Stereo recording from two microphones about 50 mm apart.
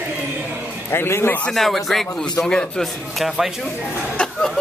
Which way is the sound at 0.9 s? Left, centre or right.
Left.